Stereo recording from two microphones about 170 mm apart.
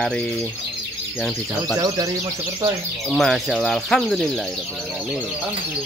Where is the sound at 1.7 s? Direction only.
20° right (ahead or behind).